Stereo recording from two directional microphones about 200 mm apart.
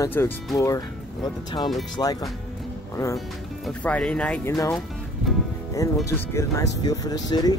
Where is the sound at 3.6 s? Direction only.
5° left (ahead or behind).